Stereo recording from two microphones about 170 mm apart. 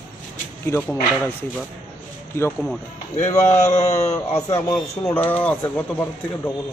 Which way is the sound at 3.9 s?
20° left (ahead or behind).